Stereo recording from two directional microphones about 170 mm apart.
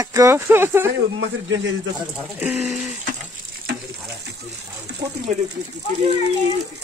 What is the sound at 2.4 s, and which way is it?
Speech, 5° right (ahead or behind).